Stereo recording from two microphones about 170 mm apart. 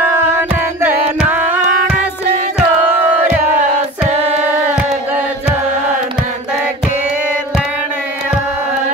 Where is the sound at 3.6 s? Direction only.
40° right (ahead or behind).